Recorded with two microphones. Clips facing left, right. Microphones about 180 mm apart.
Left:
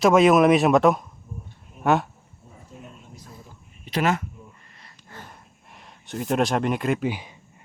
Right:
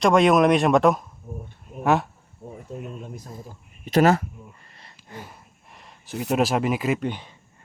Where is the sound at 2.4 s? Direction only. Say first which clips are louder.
Right 12 dB; 70° right (ahead or behind).